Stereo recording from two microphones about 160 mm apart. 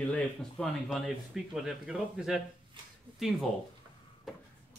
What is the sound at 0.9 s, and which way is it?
A man's voice, 5° right (ahead or behind).